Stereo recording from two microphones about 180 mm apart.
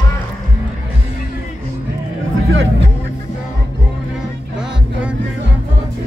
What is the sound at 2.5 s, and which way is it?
Vehicle, 90° right.